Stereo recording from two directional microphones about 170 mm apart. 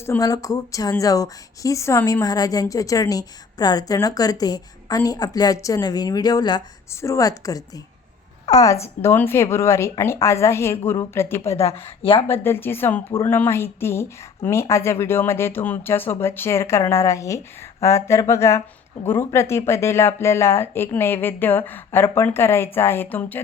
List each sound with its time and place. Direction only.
0.0 s a woman's voice: 15° left (ahead or behind)
11.4 s speech: 35° left (ahead or behind)
12.3 s a woman's voice: 15° left (ahead or behind)